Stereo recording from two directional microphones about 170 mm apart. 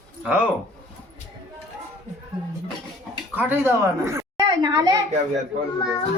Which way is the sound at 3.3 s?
10° right (ahead or behind).